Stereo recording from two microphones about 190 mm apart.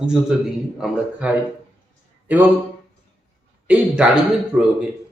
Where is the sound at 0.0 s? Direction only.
5° right (ahead or behind).